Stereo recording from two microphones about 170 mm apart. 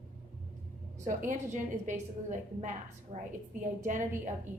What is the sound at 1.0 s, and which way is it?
A woman's voice, 50° right (ahead or behind).